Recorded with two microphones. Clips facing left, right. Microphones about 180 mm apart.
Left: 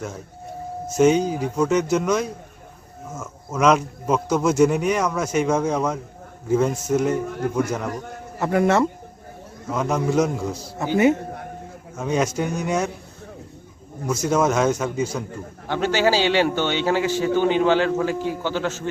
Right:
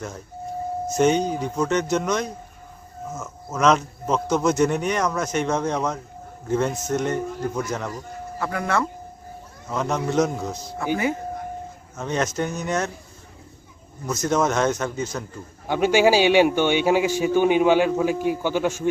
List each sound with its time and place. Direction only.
0.9 s speech: 5° left (ahead or behind)
8.4 s speech: 25° left (ahead or behind)
9.7 s speech: 10° left (ahead or behind)
11.9 s speech: 10° left (ahead or behind)
14.1 s speech: 10° left (ahead or behind)
15.6 s a man's voice: 10° right (ahead or behind)